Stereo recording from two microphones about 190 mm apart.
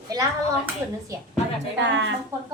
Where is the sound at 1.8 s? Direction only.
70° right (ahead or behind).